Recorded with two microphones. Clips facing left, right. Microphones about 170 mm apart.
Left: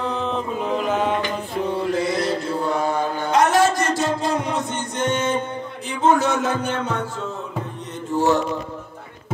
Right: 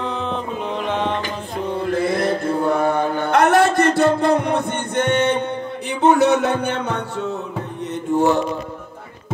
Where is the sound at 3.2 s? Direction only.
60° right (ahead or behind).